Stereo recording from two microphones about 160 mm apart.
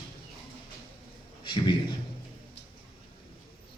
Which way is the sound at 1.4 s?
30° left (ahead or behind).